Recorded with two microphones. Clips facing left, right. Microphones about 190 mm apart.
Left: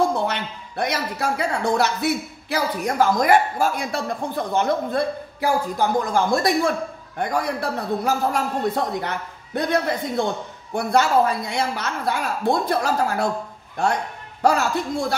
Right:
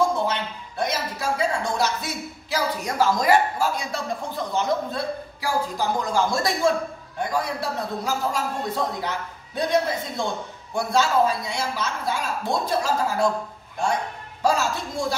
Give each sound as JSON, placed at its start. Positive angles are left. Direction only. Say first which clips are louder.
{"t": 0.0, "sound": "speech", "louder": "left 1 dB", "side_deg": 65}
{"t": 14.4, "sound": "speech", "louder": "left 3 dB", "side_deg": 60}